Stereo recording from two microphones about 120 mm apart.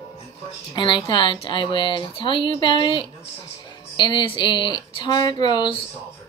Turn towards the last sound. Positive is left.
turn(degrees=40)  # may be behind; listen again after turning